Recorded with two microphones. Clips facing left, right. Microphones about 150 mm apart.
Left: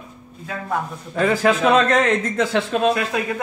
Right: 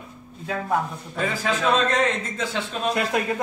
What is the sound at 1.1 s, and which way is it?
A man's voice, 75° left (ahead or behind).